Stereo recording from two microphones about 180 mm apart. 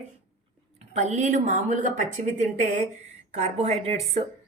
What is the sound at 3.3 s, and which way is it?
Speech, 35° right (ahead or behind).